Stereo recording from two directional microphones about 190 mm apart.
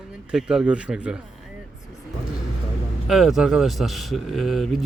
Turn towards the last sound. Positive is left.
turn(degrees=0)  # may be behind; listen again after turning